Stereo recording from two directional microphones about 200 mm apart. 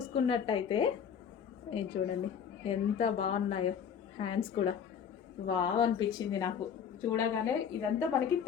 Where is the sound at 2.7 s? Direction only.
30° left (ahead or behind).